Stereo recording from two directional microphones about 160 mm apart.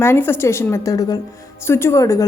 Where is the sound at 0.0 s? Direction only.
15° left (ahead or behind).